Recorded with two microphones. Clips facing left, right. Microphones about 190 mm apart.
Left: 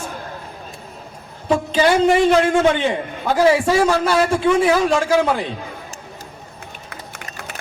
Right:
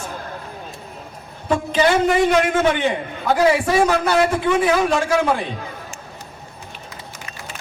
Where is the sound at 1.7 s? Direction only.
25° left (ahead or behind).